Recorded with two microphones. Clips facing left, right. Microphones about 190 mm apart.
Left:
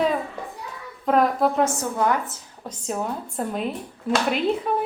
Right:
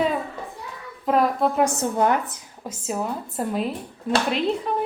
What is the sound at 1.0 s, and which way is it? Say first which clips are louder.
Speech: left 1 dB; centre (ahead or behind).